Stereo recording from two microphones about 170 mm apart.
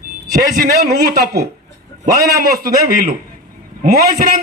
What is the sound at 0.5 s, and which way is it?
Speech, 65° right (ahead or behind).